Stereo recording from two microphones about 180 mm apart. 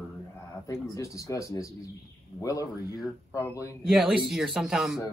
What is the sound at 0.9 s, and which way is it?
Speech, 20° left (ahead or behind).